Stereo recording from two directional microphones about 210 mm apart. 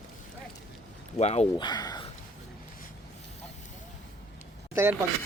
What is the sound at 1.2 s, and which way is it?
Speech, 30° left (ahead or behind).